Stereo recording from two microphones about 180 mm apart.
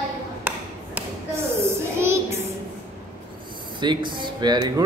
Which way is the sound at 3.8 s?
25° right (ahead or behind).